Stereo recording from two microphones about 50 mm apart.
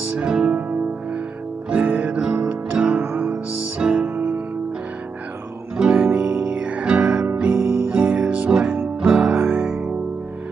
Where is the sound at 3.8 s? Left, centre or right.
Centre.